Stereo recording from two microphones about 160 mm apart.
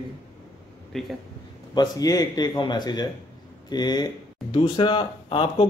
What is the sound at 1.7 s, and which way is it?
Speech, 25° left (ahead or behind).